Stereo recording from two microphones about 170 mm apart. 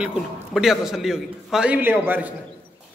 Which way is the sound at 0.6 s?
5° right (ahead or behind).